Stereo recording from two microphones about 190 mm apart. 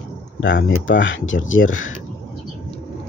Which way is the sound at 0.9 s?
75° left (ahead or behind).